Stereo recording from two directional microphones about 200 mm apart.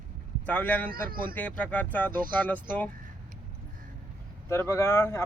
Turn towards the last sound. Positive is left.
turn(degrees=15)  # may be behind; listen again after turning